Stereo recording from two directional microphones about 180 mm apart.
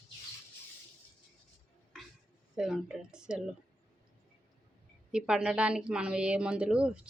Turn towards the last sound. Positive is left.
turn(degrees=-5)  # may be behind; listen again after turning